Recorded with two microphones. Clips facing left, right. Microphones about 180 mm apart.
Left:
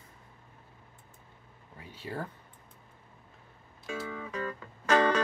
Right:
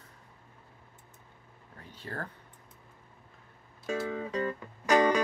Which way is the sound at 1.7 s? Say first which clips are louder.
Left 2 dB; 10° left (ahead or behind).